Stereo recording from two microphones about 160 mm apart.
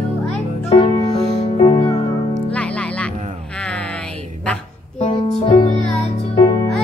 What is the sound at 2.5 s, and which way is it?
Music, 5° left (ahead or behind).